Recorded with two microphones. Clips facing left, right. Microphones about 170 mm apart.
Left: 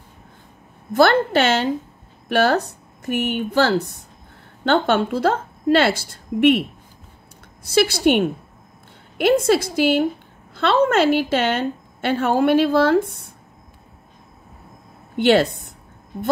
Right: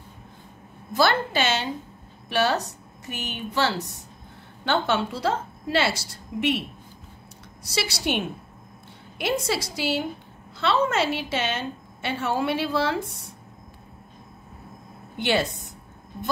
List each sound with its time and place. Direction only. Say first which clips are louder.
0.9 s a woman's voice: left 7 dB; 55° left (ahead or behind)
7.6 s a woman's voice: left 11 dB; 55° left (ahead or behind)
15.1 s a woman's voice: left 9 dB; 60° left (ahead or behind)